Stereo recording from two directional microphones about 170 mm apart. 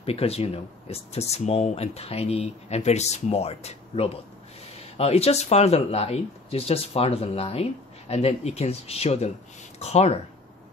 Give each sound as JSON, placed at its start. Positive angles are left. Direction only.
{"t": 0.0, "sound": "speech", "side_deg": 35}